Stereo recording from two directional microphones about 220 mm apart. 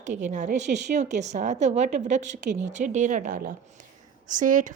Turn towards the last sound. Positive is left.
turn(degrees=-35)  # may be behind; listen again after turning